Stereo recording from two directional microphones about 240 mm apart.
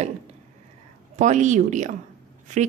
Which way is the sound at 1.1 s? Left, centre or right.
Right.